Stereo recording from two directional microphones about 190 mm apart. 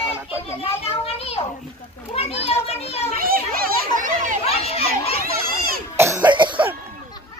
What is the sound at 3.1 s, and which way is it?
A child's voice, 50° right (ahead or behind).